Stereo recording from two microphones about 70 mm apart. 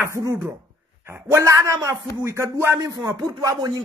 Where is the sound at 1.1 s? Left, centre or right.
Right.